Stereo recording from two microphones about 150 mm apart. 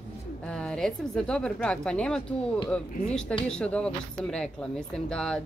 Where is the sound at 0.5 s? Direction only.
5° left (ahead or behind).